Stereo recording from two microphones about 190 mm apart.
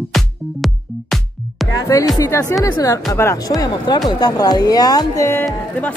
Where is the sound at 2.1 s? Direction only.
15° left (ahead or behind).